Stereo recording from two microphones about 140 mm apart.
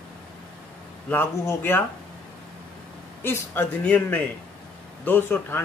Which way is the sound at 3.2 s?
15° left (ahead or behind).